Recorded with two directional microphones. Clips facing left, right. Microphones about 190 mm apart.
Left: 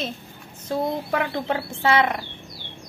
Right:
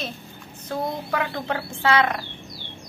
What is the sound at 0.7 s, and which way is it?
Speech, 25° left (ahead or behind).